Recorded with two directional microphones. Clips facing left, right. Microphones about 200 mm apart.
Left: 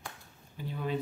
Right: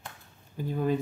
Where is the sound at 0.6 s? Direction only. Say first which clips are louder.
Right 7 dB; 45° right (ahead or behind).